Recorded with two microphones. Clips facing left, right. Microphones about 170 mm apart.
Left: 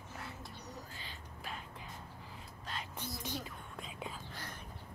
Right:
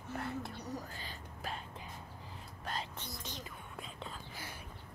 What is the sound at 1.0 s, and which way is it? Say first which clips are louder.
Whispering: right 3 dB; 40° right (ahead or behind).